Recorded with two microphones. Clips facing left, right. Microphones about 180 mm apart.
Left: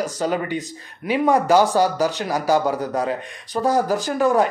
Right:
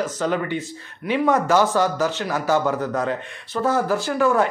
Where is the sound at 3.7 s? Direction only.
40° left (ahead or behind).